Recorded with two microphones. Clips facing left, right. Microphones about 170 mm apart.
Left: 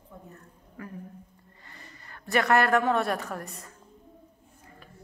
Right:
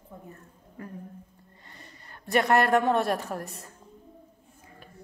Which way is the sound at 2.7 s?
20° right (ahead or behind).